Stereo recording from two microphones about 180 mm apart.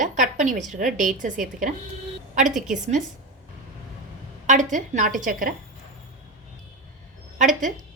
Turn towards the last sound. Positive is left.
turn(degrees=-45)  # may be behind; listen again after turning